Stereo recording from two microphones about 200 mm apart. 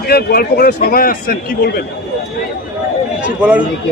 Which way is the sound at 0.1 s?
50° left (ahead or behind).